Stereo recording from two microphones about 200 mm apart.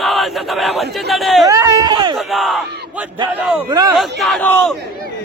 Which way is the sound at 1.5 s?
20° right (ahead or behind).